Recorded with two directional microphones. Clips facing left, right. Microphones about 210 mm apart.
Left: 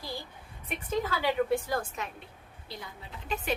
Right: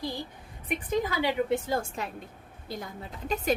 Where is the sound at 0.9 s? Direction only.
15° right (ahead or behind).